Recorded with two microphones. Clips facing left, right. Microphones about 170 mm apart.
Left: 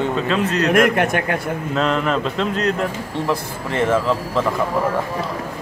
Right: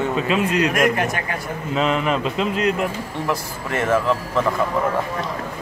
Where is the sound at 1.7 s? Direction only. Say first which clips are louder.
Even; 5° right (ahead or behind).